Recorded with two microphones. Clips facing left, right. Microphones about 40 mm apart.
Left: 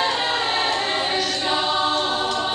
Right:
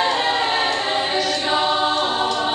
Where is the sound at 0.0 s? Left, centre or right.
Centre.